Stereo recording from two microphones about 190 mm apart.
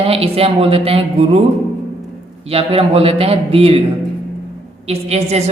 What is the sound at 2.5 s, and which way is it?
Speech, 30° right (ahead or behind).